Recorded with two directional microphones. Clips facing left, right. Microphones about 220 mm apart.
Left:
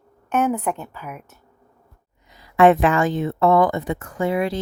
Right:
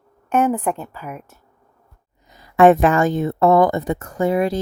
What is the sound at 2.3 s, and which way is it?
A woman's voice, 45° right (ahead or behind).